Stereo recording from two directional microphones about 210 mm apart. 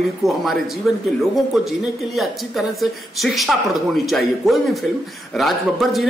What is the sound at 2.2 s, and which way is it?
Speech, centre (ahead or behind).